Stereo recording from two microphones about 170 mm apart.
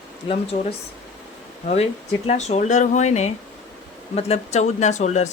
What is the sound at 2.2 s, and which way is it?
Speech, 40° left (ahead or behind).